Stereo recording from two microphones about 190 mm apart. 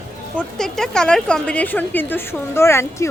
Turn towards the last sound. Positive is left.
turn(degrees=15)  # may be behind; listen again after turning